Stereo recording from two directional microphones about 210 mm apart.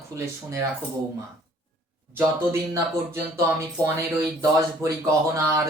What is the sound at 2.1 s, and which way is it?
Speech, 10° right (ahead or behind).